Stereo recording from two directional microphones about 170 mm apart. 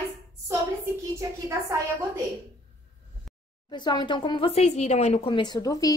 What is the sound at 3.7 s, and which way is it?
Speech, 25° left (ahead or behind).